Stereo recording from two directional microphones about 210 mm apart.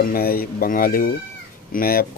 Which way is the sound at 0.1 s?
45° left (ahead or behind).